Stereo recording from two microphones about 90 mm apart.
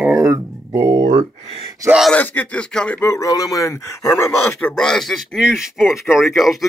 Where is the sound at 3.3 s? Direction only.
40° left (ahead or behind).